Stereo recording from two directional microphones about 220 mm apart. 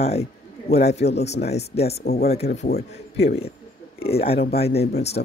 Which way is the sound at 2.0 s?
45° left (ahead or behind).